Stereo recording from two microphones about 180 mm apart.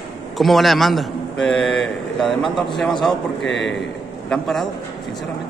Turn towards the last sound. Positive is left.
turn(degrees=0)  # may be behind; listen again after turning